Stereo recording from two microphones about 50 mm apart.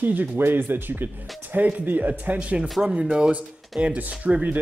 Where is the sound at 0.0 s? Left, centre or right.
Right.